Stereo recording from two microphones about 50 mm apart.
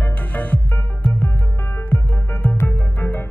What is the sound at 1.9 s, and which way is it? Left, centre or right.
Music, left.